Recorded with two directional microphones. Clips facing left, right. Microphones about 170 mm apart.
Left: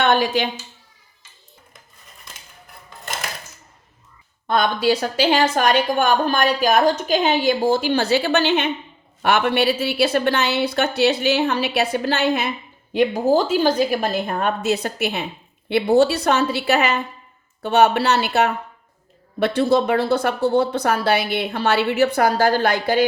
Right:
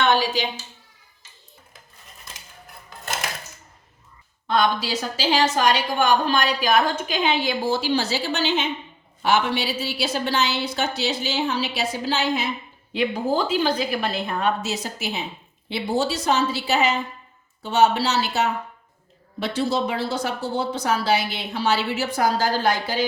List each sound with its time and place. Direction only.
0.0 s speech: 55° left (ahead or behind)
4.4 s a woman's voice: 55° left (ahead or behind)
12.9 s a woman's voice: 45° left (ahead or behind); by 23.0 s 60° left (ahead or behind)